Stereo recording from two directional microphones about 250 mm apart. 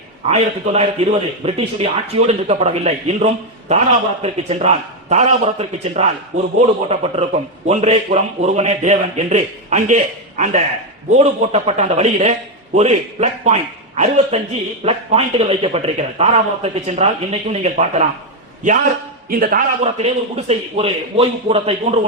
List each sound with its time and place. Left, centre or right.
0.3 s a man's voice: right
19.3 s a man's voice: right